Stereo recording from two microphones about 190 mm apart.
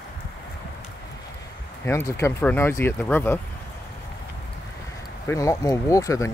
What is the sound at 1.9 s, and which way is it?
Speech, 15° left (ahead or behind).